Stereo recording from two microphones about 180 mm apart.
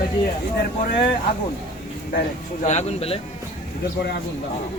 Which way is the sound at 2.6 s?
40° left (ahead or behind).